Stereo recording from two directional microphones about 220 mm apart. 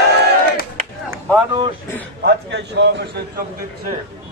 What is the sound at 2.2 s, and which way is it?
A man's voice, 50° right (ahead or behind).